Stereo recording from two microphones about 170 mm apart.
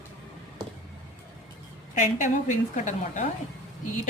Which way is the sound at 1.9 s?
50° left (ahead or behind).